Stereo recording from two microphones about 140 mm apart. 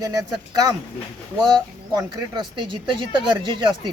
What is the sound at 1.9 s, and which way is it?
Speech, 35° right (ahead or behind).